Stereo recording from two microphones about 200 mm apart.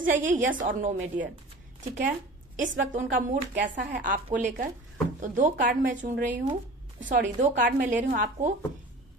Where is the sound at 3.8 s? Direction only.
45° right (ahead or behind).